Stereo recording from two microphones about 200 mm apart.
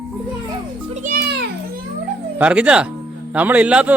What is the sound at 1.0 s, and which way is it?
Children playing, 50° right (ahead or behind).